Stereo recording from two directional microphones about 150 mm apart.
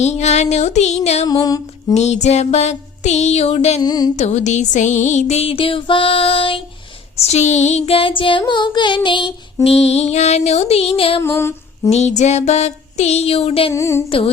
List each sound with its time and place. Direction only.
0.0 s music: 50° left (ahead or behind)
1.3 s music: 25° left (ahead or behind)
1.9 s music: 50° left (ahead or behind)
3.8 s music: 25° left (ahead or behind)
4.2 s music: 50° left (ahead or behind); by 9.0 s 30° left (ahead or behind)
9.6 s music: 45° left (ahead or behind)
11.2 s female singing: 15° left (ahead or behind)
11.9 s music: 50° left (ahead or behind)
13.7 s music: 20° left (ahead or behind)